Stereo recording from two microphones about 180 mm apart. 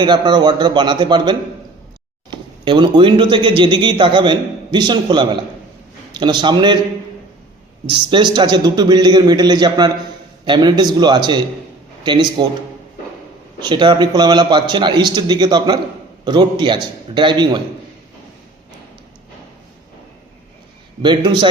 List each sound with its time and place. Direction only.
0.0 s speech: 25° right (ahead or behind)
7.9 s speech: 25° right (ahead or behind)
13.6 s speech: 25° right (ahead or behind)
21.0 s speech: 25° right (ahead or behind)